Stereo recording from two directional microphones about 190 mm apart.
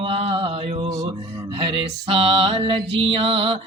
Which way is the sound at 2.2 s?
30° right (ahead or behind).